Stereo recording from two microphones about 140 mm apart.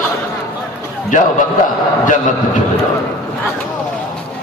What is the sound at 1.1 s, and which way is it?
Speech, 65° left (ahead or behind).